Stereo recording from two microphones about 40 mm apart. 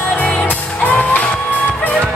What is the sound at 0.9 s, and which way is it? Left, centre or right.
Music, left.